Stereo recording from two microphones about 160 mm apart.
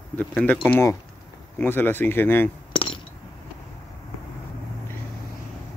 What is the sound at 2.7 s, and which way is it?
Glass, 35° left (ahead or behind).